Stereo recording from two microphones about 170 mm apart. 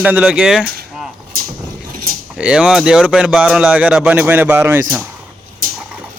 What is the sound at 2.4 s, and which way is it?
Speech, 5° right (ahead or behind).